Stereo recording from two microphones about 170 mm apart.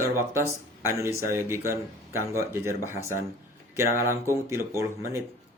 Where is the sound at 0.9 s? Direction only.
15° right (ahead or behind).